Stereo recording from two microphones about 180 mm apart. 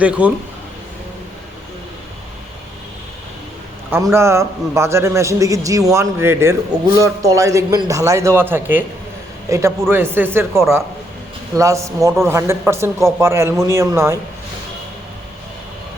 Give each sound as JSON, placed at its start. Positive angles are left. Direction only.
{"t": 0.0, "sound": "a man's voice", "side_deg": -5}
{"t": 4.1, "sound": "a man's voice", "side_deg": -15}